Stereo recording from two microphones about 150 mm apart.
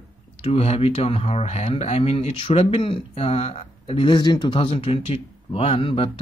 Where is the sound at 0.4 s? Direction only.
40° left (ahead or behind).